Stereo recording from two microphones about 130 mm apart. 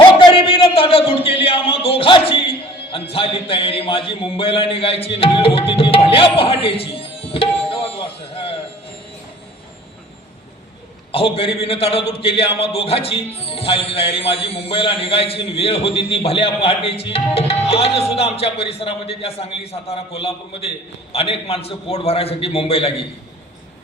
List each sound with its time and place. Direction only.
0.3 s a sound: 45° left (ahead or behind)
2.9 s a man's voice: 45° left (ahead or behind)
11.1 s a man's voice: 45° left (ahead or behind)